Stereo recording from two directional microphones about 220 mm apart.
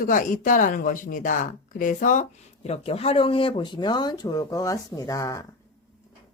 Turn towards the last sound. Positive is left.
turn(degrees=15)  # may be behind; listen again after turning